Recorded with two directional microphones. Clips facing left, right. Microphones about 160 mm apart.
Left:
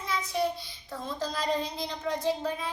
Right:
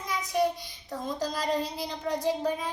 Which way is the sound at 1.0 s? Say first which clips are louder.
Right 1 dB; 10° right (ahead or behind).